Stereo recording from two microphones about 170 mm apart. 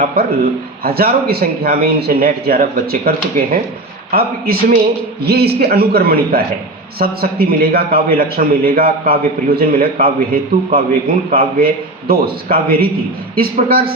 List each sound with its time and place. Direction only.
0.9 s a man's voice: 65° right (ahead or behind)